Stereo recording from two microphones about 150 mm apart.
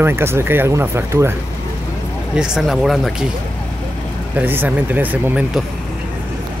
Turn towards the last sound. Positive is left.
turn(degrees=-10)  # may be behind; listen again after turning